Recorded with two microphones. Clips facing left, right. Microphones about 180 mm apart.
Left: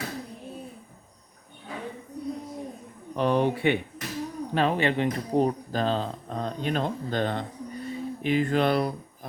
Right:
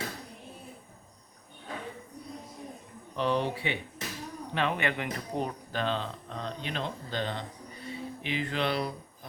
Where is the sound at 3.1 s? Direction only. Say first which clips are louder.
Left 5 dB; 50° left (ahead or behind).